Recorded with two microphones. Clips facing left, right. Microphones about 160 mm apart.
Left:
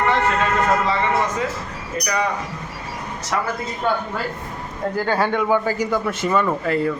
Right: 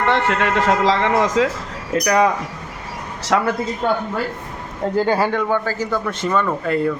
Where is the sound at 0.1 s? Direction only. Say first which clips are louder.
Right 1 dB; 70° right (ahead or behind); by 3.5 s 90° right.